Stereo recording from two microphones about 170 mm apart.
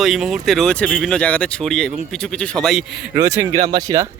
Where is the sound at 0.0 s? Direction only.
Centre (ahead or behind).